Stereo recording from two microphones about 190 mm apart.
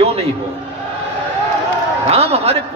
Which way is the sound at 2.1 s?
30° right (ahead or behind).